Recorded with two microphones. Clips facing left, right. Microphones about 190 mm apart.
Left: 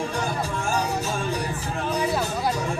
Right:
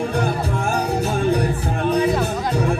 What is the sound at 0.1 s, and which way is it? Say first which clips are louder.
Music: right 6 dB; 55° right (ahead or behind).